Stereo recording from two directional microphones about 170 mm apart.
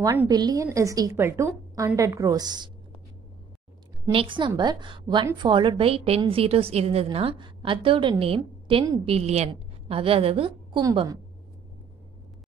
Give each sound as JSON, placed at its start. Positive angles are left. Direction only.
{"t": 0.0, "sound": "a woman's voice", "side_deg": -15}
{"t": 4.1, "sound": "a woman's voice", "side_deg": -30}
{"t": 9.0, "sound": "a woman's voice", "side_deg": -35}